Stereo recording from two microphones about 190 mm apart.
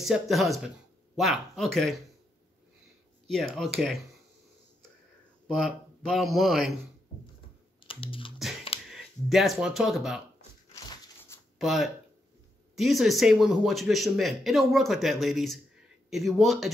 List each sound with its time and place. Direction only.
0.0 s speech: centre (ahead or behind)
3.3 s speech: centre (ahead or behind)
5.5 s speech: centre (ahead or behind)
7.8 s computer keyboard: 30° left (ahead or behind)
8.9 s speech: centre (ahead or behind)
10.7 s a sound: 15° left (ahead or behind)
11.5 s speech: centre (ahead or behind)